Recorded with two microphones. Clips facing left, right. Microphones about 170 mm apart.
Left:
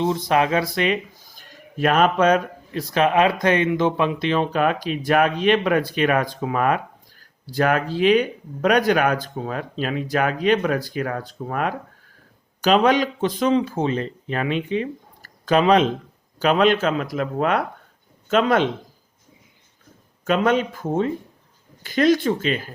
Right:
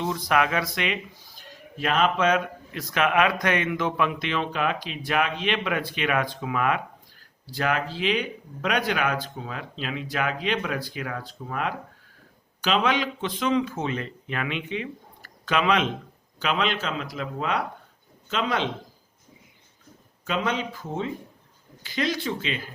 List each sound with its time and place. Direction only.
0.0 s speech: 25° left (ahead or behind); by 18.7 s 50° left (ahead or behind)
20.2 s speech: 50° left (ahead or behind)